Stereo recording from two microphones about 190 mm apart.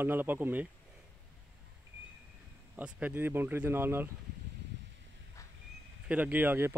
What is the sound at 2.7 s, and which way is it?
Speech, 10° right (ahead or behind).